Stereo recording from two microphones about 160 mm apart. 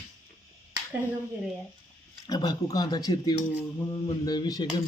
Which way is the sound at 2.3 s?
25° left (ahead or behind).